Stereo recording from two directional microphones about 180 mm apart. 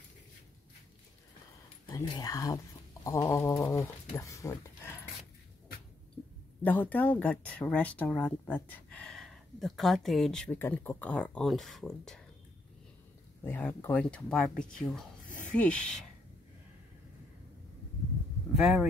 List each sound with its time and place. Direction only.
1.9 s speech: 20° left (ahead or behind)
6.6 s speech: 10° left (ahead or behind)
13.4 s speech: 10° left (ahead or behind)
15.2 s a sound: 45° left (ahead or behind)
15.5 s speech: 5° left (ahead or behind)
18.5 s speech: centre (ahead or behind)